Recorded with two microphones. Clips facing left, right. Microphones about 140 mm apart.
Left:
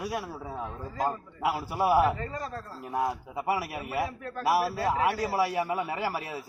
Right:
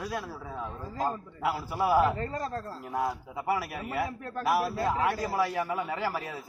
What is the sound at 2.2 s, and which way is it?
Speech, 40° right (ahead or behind).